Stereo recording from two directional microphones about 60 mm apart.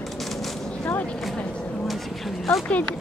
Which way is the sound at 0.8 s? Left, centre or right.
Left.